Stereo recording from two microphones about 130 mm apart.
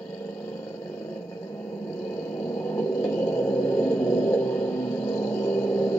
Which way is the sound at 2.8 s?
20° left (ahead or behind).